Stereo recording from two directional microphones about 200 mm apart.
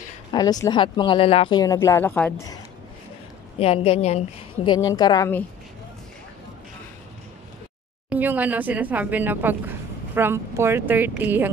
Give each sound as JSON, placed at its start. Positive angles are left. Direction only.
{"t": 0.3, "sound": "speech", "side_deg": 20}
{"t": 3.5, "sound": "speech", "side_deg": 30}
{"t": 4.6, "sound": "speech", "side_deg": 20}
{"t": 8.1, "sound": "speech", "side_deg": -10}